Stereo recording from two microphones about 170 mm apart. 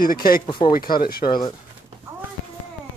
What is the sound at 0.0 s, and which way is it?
Speech, 60° left (ahead or behind).